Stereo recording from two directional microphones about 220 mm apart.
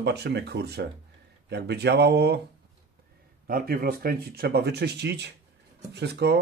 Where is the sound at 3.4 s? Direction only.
40° right (ahead or behind).